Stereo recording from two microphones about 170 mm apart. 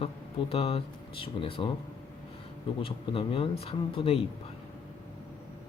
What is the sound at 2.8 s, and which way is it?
Speech, 30° left (ahead or behind).